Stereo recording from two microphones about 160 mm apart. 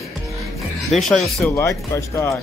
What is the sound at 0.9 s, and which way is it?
Speech, centre (ahead or behind).